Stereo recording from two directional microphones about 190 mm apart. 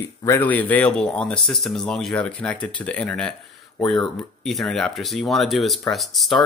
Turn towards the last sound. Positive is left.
turn(degrees=0)  # may be behind; listen again after turning